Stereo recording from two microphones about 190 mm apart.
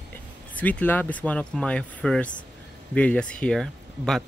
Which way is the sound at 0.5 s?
10° left (ahead or behind).